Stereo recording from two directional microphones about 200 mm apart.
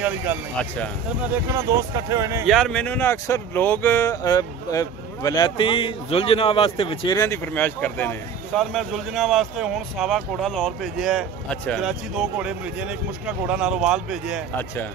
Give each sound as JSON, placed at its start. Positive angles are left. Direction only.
{"t": 1.5, "sound": "speech", "side_deg": -15}
{"t": 2.4, "sound": "speech", "side_deg": 0}